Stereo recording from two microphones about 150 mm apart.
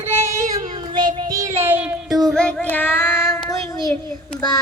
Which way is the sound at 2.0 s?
Centre (ahead or behind).